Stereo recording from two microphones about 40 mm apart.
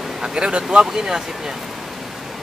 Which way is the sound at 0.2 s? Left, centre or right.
Right.